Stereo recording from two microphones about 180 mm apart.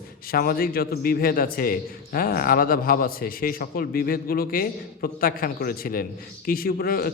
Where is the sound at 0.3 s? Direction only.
55° left (ahead or behind).